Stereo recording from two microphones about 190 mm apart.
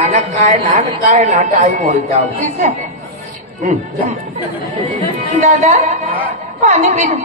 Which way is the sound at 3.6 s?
40° right (ahead or behind).